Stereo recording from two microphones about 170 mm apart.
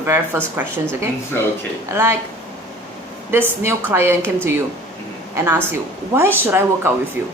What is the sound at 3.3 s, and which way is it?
Speech, 15° right (ahead or behind).